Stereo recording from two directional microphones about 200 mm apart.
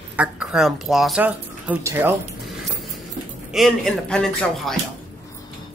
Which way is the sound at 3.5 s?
Centre (ahead or behind).